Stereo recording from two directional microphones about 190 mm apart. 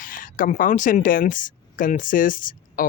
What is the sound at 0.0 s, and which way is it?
Speech, 45° left (ahead or behind).